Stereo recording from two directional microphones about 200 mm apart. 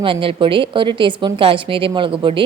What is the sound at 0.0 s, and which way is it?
Speech, 25° right (ahead or behind).